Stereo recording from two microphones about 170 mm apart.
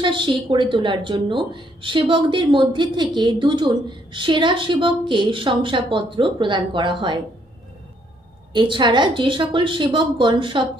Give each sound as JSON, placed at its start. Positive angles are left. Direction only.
{"t": 0.0, "sound": "a woman's voice", "side_deg": -30}
{"t": 8.5, "sound": "a woman's voice", "side_deg": -30}